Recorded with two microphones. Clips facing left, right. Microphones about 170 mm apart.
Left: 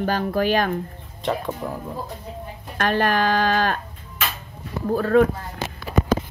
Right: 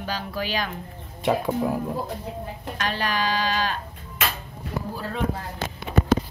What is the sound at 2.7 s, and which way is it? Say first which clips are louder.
Speech: left 7 dB; 50° left (ahead or behind).